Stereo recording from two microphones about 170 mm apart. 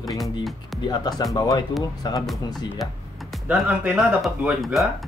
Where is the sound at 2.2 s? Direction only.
Centre (ahead or behind).